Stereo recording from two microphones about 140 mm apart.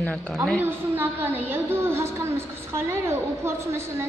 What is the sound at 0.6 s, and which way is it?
A woman's voice, 15° right (ahead or behind).